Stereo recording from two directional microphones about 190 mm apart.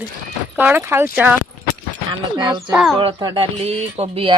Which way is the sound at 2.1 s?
25° right (ahead or behind).